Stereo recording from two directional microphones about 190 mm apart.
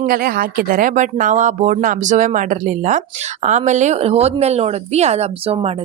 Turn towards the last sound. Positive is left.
turn(degrees=-30)  # may be behind; listen again after turning